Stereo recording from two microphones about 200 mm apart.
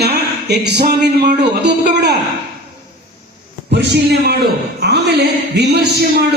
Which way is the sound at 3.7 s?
60° right (ahead or behind).